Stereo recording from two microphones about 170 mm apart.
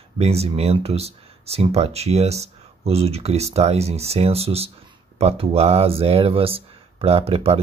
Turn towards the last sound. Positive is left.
turn(degrees=-35)  # may be behind; listen again after turning